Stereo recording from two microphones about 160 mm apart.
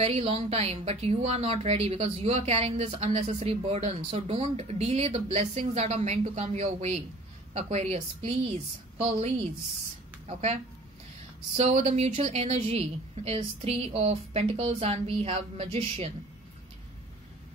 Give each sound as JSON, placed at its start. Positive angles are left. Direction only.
{"t": 0.0, "sound": "a woman's voice", "side_deg": -40}